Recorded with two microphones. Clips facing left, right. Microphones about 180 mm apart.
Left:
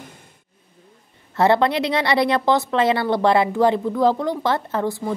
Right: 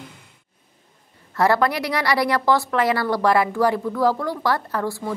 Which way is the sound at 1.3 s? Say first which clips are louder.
Left 2 dB; 25° left (ahead or behind).